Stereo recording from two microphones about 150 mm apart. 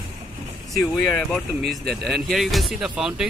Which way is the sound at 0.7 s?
Centre (ahead or behind).